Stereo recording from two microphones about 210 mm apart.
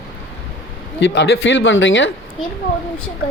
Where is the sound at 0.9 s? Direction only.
55° left (ahead or behind).